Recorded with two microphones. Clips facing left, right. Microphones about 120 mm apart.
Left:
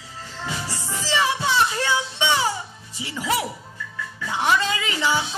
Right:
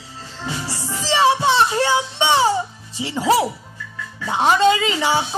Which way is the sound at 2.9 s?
25° right (ahead or behind).